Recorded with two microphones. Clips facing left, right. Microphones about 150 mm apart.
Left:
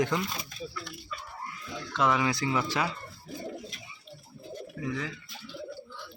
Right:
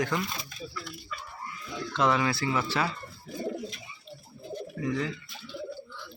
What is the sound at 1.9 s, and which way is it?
Speech, 10° left (ahead or behind).